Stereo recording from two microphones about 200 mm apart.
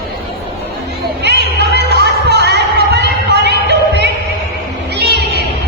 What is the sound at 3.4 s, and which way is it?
Music, 60° right (ahead or behind).